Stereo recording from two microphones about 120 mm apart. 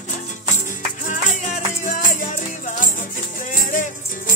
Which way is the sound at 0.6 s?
90° left.